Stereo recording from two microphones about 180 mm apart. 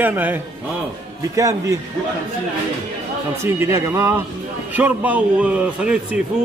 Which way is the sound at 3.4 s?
15° right (ahead or behind).